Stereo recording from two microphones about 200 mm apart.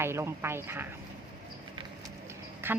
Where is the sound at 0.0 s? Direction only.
15° right (ahead or behind).